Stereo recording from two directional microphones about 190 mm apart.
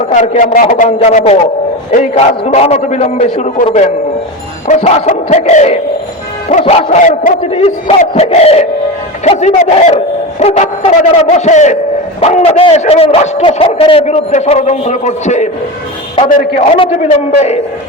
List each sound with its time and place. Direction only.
0.1 s a man's voice: 40° left (ahead or behind)
16.7 s a man's voice: 30° left (ahead or behind)